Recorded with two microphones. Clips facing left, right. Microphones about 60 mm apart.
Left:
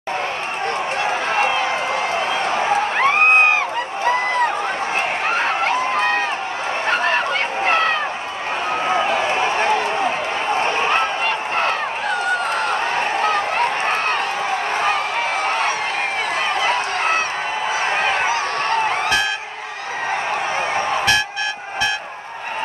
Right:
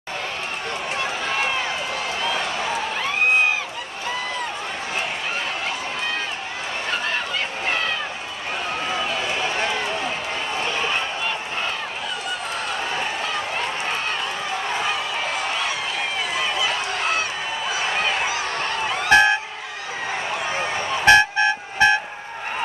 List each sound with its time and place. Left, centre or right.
1.0 s run: left
2.1 s a sound: left
6.9 s goose: left
8.8 s run: left
15.4 s a sound: left
19.0 s music: right
21.0 s vehicle: right